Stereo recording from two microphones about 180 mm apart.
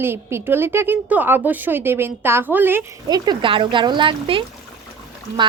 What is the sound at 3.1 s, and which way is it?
Speech, 20° right (ahead or behind).